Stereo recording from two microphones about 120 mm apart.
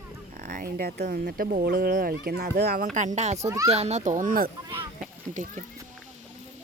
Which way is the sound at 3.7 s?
65° right (ahead or behind).